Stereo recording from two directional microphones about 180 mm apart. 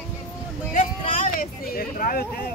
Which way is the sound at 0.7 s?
45° left (ahead or behind).